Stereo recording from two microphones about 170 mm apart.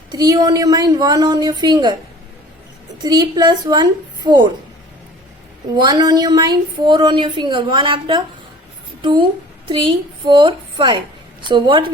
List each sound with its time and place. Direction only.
0.1 s a woman's voice: 25° right (ahead or behind)
3.0 s a woman's voice: 25° right (ahead or behind)
5.7 s a woman's voice: 25° right (ahead or behind)